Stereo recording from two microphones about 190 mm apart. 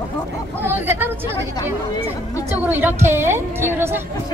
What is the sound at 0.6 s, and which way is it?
Speech, 10° right (ahead or behind).